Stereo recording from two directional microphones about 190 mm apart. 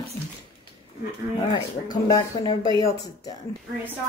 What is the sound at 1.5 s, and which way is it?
Speech, 20° left (ahead or behind).